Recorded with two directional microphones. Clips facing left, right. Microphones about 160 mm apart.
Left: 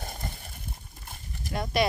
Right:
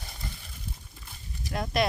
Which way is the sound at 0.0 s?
50° left (ahead or behind).